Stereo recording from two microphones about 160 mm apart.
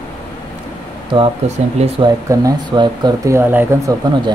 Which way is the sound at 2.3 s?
25° right (ahead or behind).